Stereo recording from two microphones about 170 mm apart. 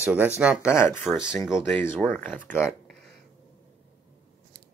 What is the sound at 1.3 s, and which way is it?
Speech, 15° left (ahead or behind).